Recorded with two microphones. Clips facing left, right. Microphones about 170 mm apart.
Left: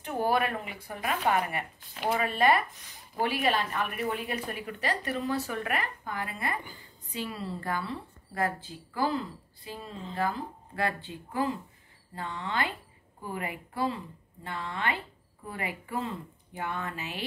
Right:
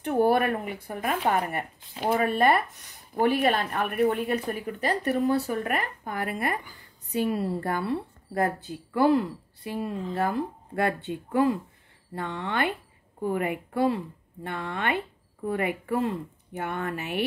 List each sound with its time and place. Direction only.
0.0 s speech: 55° right (ahead or behind)
10.1 s speech: 45° right (ahead or behind)
12.2 s speech: 60° right (ahead or behind)